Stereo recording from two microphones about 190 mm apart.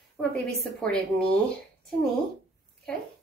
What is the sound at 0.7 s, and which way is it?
Speech, 5° left (ahead or behind).